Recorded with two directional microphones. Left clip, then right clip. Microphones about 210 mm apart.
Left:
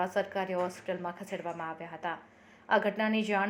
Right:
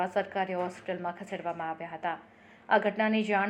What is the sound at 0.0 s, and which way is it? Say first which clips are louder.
A woman's voice: right 2 dB; 25° left (ahead or behind).